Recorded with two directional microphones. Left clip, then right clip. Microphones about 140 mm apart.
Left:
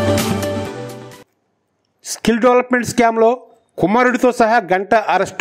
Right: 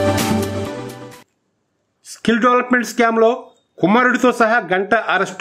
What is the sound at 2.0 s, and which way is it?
A man's voice, 30° left (ahead or behind).